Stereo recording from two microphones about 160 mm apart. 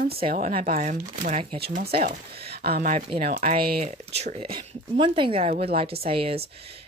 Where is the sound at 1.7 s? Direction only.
70° right (ahead or behind).